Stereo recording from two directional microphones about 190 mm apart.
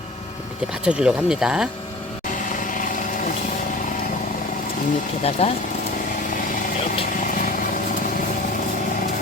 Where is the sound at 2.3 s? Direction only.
45° left (ahead or behind).